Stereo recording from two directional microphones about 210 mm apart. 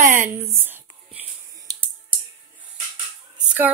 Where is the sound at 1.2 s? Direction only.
15° right (ahead or behind).